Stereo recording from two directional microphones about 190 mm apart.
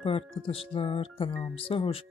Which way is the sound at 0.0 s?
30° left (ahead or behind).